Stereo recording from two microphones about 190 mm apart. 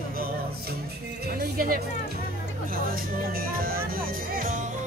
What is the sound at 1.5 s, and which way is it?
Speech, 50° right (ahead or behind).